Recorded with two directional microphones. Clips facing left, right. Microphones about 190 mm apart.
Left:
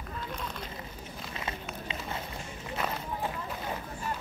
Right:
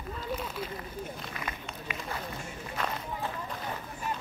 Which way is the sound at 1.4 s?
25° left (ahead or behind).